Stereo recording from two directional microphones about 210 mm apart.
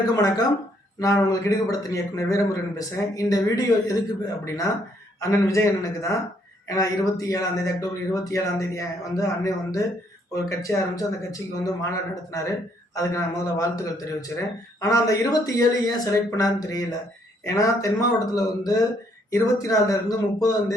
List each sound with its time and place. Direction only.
0.2 s speech: 15° left (ahead or behind)